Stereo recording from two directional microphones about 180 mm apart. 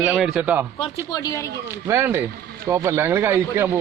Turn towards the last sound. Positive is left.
turn(degrees=-15)  # may be behind; listen again after turning